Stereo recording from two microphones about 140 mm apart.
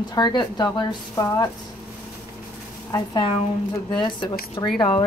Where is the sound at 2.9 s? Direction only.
25° left (ahead or behind).